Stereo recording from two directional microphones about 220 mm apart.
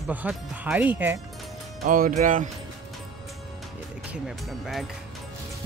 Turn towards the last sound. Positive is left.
turn(degrees=0)  # may be behind; listen again after turning